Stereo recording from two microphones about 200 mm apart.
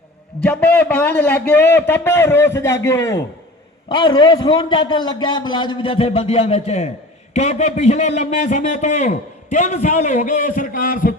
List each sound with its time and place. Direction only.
0.4 s a man's voice: 5° left (ahead or behind); by 11.1 s 45° left (ahead or behind)